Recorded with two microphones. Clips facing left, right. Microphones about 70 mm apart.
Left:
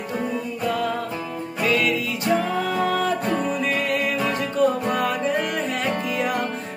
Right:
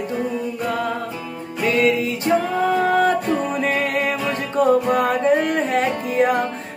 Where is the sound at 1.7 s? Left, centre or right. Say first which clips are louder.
Right 5 dB; right.